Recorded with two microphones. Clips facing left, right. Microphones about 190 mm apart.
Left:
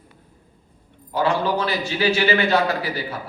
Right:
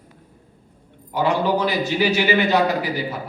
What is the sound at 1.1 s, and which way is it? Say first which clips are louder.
A man's voice: right 1 dB; 15° right (ahead or behind).